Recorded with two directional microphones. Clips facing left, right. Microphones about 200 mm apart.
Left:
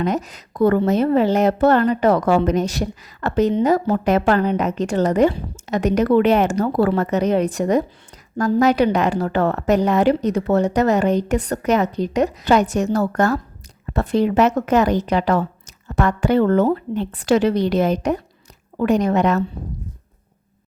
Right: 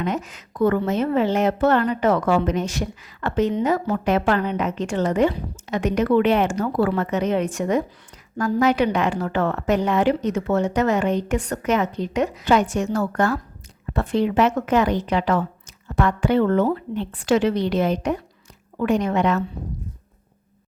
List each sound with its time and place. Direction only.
0.0 s speech: 40° left (ahead or behind)